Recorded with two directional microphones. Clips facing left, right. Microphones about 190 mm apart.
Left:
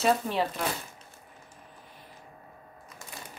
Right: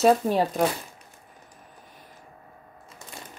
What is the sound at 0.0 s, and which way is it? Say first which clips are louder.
Speech: right 6 dB; 45° right (ahead or behind).